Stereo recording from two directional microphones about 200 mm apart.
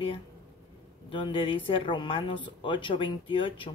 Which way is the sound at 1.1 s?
25° left (ahead or behind).